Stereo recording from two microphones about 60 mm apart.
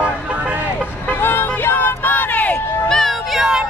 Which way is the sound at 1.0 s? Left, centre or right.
Left.